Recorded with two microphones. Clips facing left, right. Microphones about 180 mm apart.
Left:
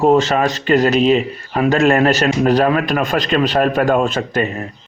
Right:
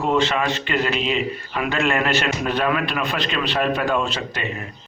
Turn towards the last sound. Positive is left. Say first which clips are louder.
# left 8 dB
turn(degrees=50)  # may be behind; listen again after turning